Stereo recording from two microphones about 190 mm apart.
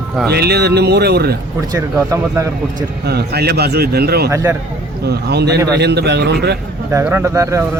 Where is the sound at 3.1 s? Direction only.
60° right (ahead or behind).